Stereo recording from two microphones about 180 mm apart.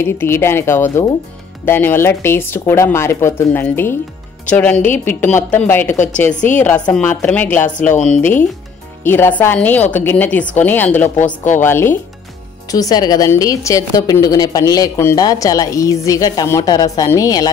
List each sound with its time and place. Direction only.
0.0 s a woman's voice: 15° left (ahead or behind)